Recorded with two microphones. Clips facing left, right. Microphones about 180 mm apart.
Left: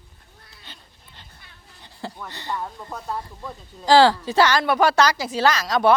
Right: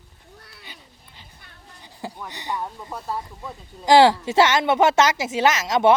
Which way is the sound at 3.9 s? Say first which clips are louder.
Right 1 dB; 20° right (ahead or behind).